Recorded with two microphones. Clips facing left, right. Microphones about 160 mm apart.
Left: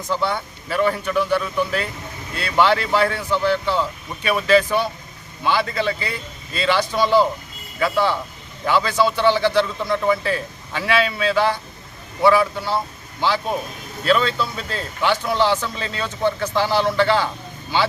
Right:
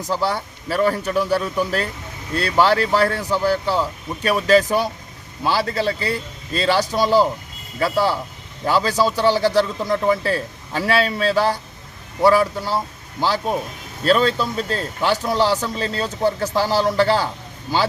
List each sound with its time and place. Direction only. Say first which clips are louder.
0.0 s a man's voice: right 1 dB; 35° right (ahead or behind)